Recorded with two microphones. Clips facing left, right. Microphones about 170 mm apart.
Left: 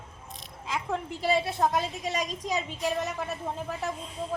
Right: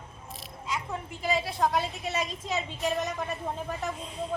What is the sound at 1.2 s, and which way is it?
Speech, 30° left (ahead or behind).